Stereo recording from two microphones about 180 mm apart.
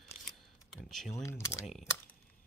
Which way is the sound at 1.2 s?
15° left (ahead or behind).